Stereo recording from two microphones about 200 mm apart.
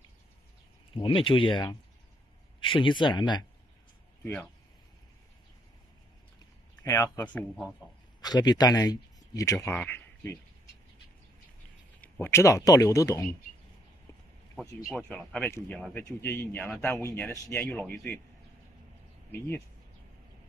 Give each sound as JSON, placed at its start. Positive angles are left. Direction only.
{"t": 0.9, "sound": "speech", "side_deg": 25}
{"t": 4.2, "sound": "speech", "side_deg": 10}
{"t": 6.8, "sound": "speech", "side_deg": 15}
{"t": 8.2, "sound": "speech", "side_deg": 20}
{"t": 12.0, "sound": "speech", "side_deg": 10}
{"t": 14.9, "sound": "speech", "side_deg": 5}
{"t": 19.3, "sound": "speech", "side_deg": 10}